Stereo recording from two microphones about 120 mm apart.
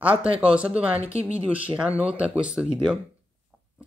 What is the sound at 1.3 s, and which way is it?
Speech, 10° right (ahead or behind).